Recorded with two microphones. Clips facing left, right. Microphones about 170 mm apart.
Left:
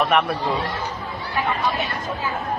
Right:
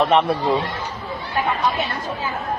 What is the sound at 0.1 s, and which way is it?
Speech, 20° right (ahead or behind).